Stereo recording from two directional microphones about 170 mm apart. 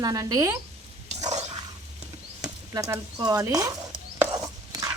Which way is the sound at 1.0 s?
40° right (ahead or behind).